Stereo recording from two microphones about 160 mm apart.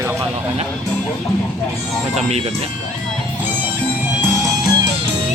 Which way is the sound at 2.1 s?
40° right (ahead or behind).